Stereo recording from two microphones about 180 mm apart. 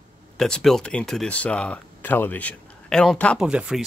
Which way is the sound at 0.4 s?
Centre (ahead or behind).